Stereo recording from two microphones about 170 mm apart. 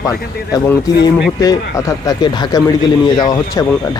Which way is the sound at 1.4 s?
20° left (ahead or behind).